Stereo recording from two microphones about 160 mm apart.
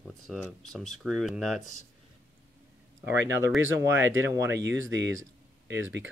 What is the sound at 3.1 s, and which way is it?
Speech, 15° right (ahead or behind).